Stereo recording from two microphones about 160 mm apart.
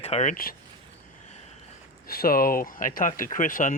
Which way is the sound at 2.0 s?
70° left (ahead or behind).